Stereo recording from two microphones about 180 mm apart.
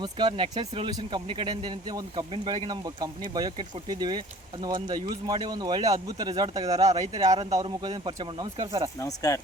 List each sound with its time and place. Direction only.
0.0 s speech: 25° right (ahead or behind)
9.0 s speech: 20° left (ahead or behind)